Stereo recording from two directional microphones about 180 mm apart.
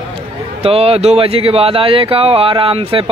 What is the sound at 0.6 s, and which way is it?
Speech, 35° right (ahead or behind).